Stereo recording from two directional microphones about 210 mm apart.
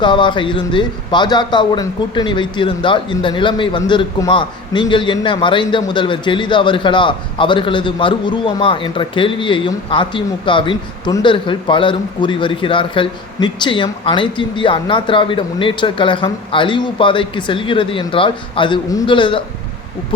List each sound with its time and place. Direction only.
0.0 s a man's voice: 20° left (ahead or behind)